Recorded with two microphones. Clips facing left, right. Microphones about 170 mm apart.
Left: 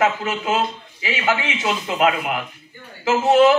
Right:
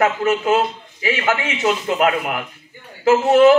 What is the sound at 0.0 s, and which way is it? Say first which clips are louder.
A man's voice: right 3 dB; 50° right (ahead or behind).